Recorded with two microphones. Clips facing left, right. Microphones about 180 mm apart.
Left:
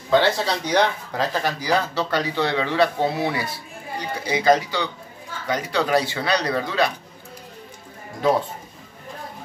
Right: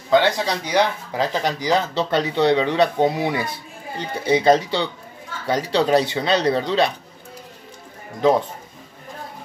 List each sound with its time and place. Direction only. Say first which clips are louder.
0.1 s speech: right 1 dB; 15° right (ahead or behind)